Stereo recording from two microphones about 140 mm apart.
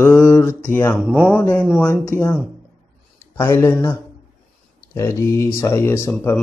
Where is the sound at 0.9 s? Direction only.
10° right (ahead or behind).